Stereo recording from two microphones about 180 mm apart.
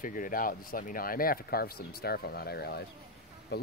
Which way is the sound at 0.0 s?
50° left (ahead or behind).